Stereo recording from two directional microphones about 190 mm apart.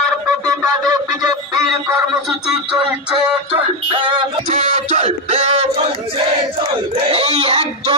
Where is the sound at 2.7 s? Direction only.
25° right (ahead or behind).